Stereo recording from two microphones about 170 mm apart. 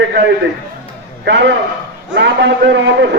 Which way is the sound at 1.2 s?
90° right.